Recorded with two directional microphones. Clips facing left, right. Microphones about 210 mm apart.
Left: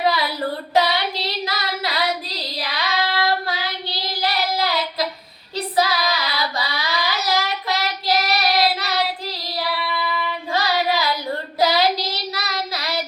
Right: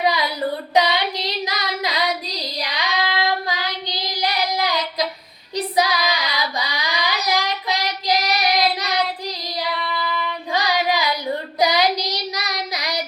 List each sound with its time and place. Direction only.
0.0 s child singing: 15° right (ahead or behind)
9.7 s child singing: 5° left (ahead or behind)
10.5 s child singing: 15° right (ahead or behind)